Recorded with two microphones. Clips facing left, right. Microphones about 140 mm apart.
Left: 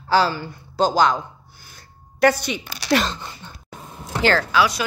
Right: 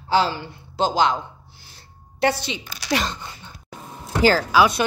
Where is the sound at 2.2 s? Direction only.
25° right (ahead or behind).